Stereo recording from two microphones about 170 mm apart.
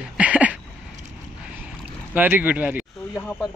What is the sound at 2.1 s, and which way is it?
Speech, 10° right (ahead or behind).